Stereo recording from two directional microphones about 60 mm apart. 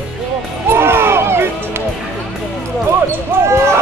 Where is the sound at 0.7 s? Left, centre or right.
Right.